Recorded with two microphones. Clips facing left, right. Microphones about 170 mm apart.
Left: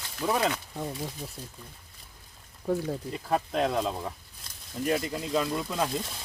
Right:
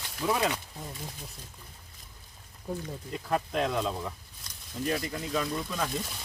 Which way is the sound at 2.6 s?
65° left (ahead or behind).